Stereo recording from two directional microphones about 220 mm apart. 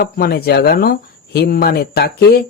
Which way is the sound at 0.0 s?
45° left (ahead or behind).